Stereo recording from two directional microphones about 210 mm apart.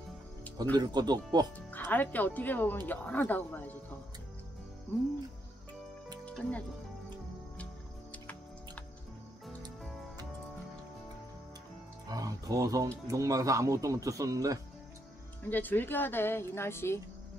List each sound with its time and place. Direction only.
0.7 s speech: 20° right (ahead or behind)
1.7 s speech: 10° left (ahead or behind)
6.2 s speech: 5° left (ahead or behind)
8.1 s music: 5° left (ahead or behind)
12.1 s speech: 15° right (ahead or behind)
15.5 s speech: 10° left (ahead or behind)